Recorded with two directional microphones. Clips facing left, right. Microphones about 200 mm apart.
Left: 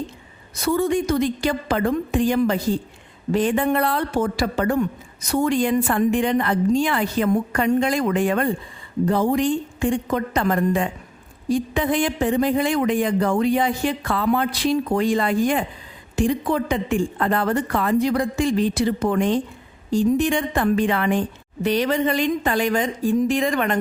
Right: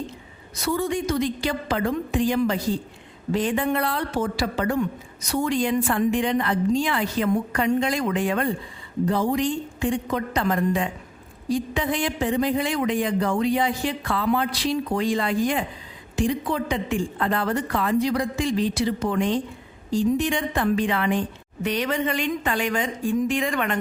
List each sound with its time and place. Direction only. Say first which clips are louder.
0.6 s a woman's voice: left 4 dB; 50° left (ahead or behind)
21.6 s a woman's voice: left 5 dB; 35° left (ahead or behind)